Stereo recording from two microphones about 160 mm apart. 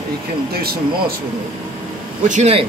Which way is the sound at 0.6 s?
70° right (ahead or behind).